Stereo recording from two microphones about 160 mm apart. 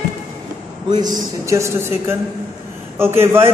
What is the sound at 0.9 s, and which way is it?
A man's voice, 25° right (ahead or behind).